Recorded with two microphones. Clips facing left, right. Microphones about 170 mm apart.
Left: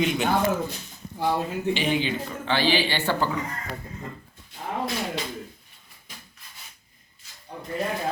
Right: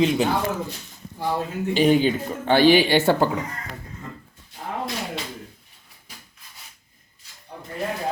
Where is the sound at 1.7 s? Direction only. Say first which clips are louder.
Right 8 dB; 45° right (ahead or behind).